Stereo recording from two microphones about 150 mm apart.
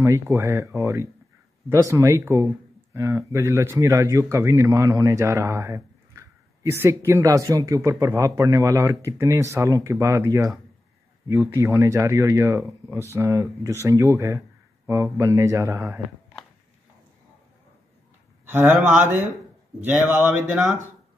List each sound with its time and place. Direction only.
0.0 s speech: 15° right (ahead or behind)
18.4 s speech: 15° right (ahead or behind)